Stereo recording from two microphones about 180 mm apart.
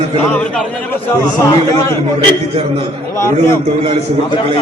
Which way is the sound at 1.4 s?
15° left (ahead or behind).